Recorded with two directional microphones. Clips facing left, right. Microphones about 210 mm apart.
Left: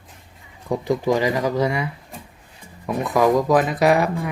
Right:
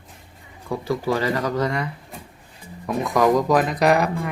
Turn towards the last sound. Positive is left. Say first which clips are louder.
# left 1 dB
turn(degrees=0)  # may be behind; listen again after turning